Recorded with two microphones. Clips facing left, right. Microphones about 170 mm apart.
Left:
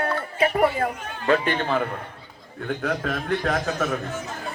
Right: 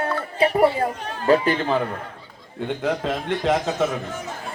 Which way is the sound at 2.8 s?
25° right (ahead or behind).